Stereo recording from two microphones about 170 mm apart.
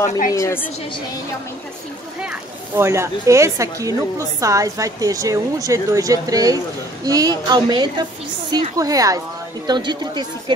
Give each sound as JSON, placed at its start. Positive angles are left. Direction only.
{"t": 0.3, "sound": "a woman's voice", "side_deg": 15}
{"t": 2.7, "sound": "a woman's voice", "side_deg": -15}